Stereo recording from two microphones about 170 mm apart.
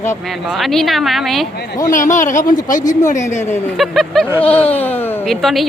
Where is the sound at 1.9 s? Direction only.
50° left (ahead or behind).